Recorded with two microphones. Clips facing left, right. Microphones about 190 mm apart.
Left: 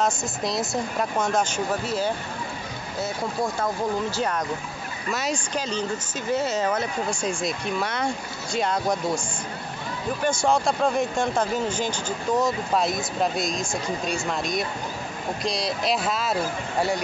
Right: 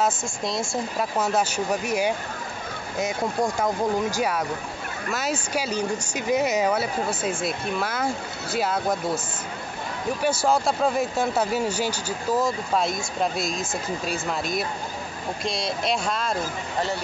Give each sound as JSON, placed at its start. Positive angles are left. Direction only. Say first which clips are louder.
{"t": 0.0, "sound": "speech", "louder": "even", "side_deg": 0}
{"t": 4.1, "sound": "speech", "louder": "right 1 dB", "side_deg": -10}
{"t": 10.2, "sound": "speech", "louder": "even", "side_deg": -5}